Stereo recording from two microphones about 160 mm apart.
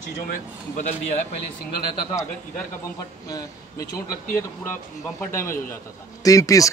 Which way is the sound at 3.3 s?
20° left (ahead or behind).